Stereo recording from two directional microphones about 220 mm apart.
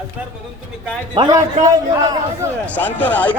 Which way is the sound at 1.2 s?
15° right (ahead or behind).